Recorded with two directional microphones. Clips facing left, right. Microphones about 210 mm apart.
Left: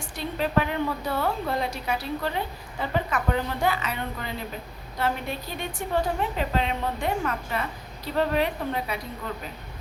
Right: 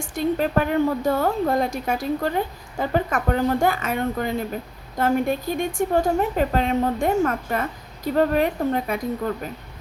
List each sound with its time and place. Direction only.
0.0 s a woman's voice: 45° right (ahead or behind)